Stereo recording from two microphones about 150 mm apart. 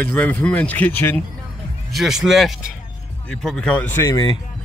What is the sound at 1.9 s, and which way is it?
Speech, 5° right (ahead or behind).